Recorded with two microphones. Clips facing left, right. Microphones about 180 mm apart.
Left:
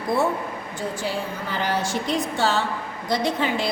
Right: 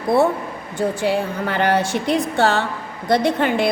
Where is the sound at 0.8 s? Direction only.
65° right (ahead or behind).